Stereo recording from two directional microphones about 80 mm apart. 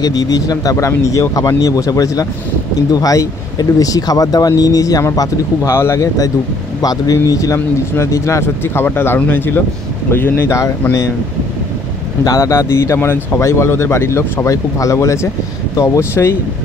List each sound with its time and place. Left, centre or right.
0.0 s speech: left
5.7 s speech: left
6.8 s speech: left
12.3 s speech: left